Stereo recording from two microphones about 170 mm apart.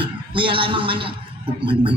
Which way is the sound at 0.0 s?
30° right (ahead or behind).